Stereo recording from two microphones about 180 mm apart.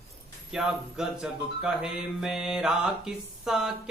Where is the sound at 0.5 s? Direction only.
5° right (ahead or behind).